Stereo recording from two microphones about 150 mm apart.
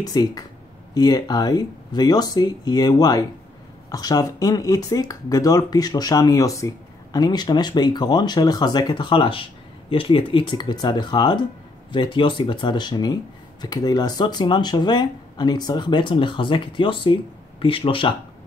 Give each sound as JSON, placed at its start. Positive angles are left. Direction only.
{"t": 0.0, "sound": "speech", "side_deg": 25}